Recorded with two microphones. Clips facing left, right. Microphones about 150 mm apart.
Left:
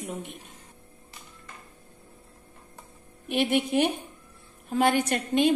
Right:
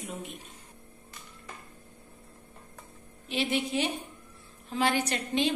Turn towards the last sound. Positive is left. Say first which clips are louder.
# left 6 dB
turn(degrees=55)  # may be behind; listen again after turning